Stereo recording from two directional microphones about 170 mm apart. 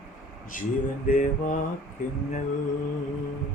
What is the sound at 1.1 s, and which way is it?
Mantra, 55° left (ahead or behind).